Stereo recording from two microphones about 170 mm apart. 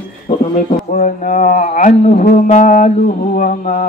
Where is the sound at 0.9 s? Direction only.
55° left (ahead or behind).